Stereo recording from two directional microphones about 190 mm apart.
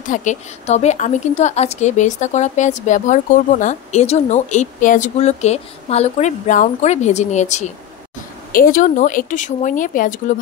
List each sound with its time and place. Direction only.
0.0 s a woman's voice: 40° left (ahead or behind)
8.5 s speech: 50° left (ahead or behind)